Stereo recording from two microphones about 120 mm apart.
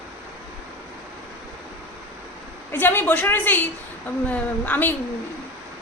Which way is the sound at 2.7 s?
15° left (ahead or behind).